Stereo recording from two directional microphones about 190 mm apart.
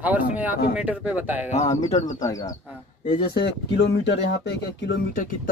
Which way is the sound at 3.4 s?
60° left (ahead or behind).